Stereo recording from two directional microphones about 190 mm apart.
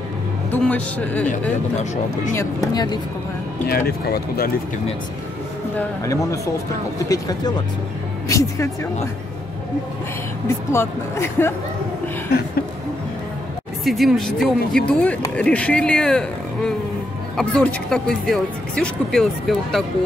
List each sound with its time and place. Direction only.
0.5 s a man's voice: 10° left (ahead or behind)
2.7 s speech: 20° left (ahead or behind)
3.7 s speech: 55° left (ahead or behind)
5.8 s a man's voice: 15° left (ahead or behind)
10.7 s a man's voice: 15° left (ahead or behind)
13.8 s a man's voice: centre (ahead or behind)